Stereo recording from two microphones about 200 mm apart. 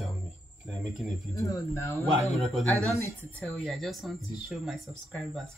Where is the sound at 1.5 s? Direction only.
15° left (ahead or behind).